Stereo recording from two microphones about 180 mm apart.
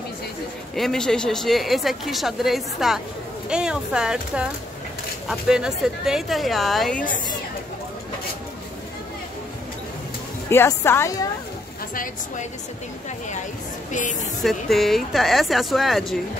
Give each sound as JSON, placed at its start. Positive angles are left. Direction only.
{"t": 0.7, "sound": "a woman's voice", "side_deg": 5}
{"t": 10.5, "sound": "a woman's voice", "side_deg": 15}
{"t": 11.9, "sound": "a woman's voice", "side_deg": 50}
{"t": 14.4, "sound": "a woman's voice", "side_deg": 0}